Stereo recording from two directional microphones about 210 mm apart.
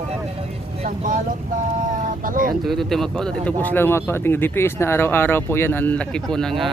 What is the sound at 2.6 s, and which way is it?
Mantra, centre (ahead or behind).